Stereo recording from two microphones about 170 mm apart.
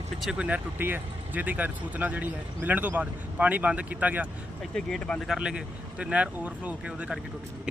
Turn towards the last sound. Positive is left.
turn(degrees=-5)  # may be behind; listen again after turning